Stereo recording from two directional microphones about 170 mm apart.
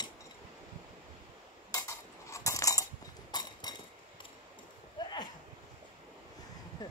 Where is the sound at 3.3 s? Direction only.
25° left (ahead or behind).